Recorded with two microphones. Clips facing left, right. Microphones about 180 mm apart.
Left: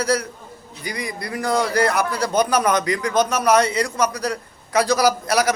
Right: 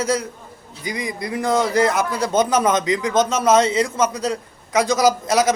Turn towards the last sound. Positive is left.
turn(degrees=-20)  # may be behind; listen again after turning